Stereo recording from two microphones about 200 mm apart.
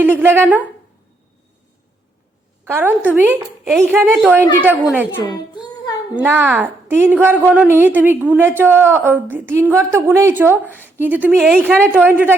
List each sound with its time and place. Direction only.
0.0 s a woman's voice: 10° right (ahead or behind)
2.6 s a woman's voice: 10° right (ahead or behind)
5.1 s a child's voice: 20° left (ahead or behind)
6.1 s a woman's voice: 10° right (ahead or behind)
11.3 s a woman's voice: centre (ahead or behind)
11.6 s a woman's voice: 10° right (ahead or behind)